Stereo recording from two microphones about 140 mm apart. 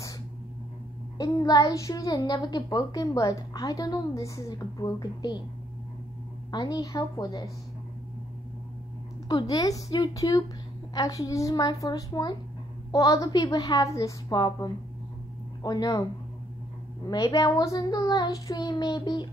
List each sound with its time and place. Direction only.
1.1 s a child's voice: 30° left (ahead or behind)
6.5 s a child's voice: 30° left (ahead or behind)
9.5 s a child's voice: 25° left (ahead or behind)
17.1 s a child's voice: 25° left (ahead or behind)